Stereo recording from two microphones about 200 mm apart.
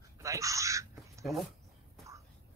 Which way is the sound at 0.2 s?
15° right (ahead or behind).